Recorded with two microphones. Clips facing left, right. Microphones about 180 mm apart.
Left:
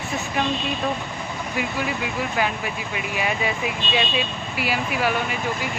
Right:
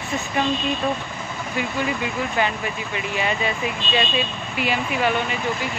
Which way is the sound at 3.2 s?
10° left (ahead or behind).